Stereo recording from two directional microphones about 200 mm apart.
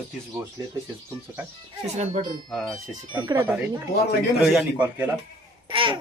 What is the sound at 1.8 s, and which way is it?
Speech, 35° right (ahead or behind).